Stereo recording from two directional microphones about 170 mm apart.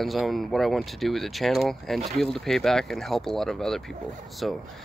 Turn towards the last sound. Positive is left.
turn(degrees=0)  # may be behind; listen again after turning